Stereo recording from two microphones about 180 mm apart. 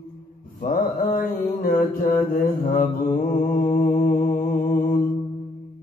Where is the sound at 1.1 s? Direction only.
55° left (ahead or behind).